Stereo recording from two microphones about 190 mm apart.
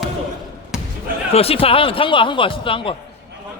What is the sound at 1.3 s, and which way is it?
Speech, 30° left (ahead or behind).